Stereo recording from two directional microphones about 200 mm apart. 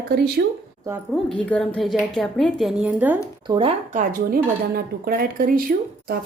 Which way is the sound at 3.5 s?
25° right (ahead or behind).